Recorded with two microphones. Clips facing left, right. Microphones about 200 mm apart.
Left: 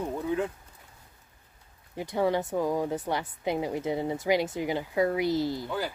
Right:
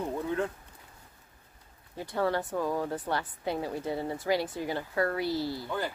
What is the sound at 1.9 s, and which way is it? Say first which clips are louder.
A woman's voice: left 3 dB; 15° left (ahead or behind).